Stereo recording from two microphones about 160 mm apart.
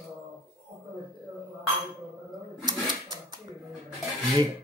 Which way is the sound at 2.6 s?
25° right (ahead or behind).